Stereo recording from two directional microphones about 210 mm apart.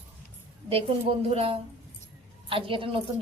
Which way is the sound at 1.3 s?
30° right (ahead or behind).